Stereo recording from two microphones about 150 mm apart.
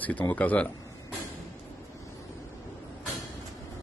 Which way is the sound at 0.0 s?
10° left (ahead or behind).